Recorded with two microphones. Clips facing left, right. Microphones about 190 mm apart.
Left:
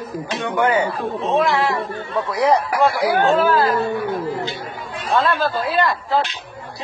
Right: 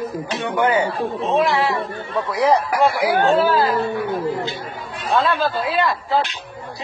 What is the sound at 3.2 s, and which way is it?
Speech, 35° right (ahead or behind).